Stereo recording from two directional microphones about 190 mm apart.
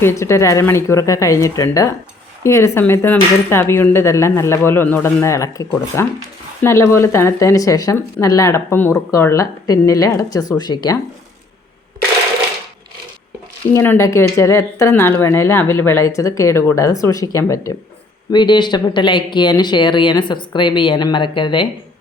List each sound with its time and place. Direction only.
0.0 s speech: 15° left (ahead or behind)
13.7 s speech: 15° left (ahead or behind)